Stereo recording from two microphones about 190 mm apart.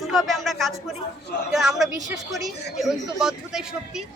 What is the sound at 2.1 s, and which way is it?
Speech, 20° right (ahead or behind).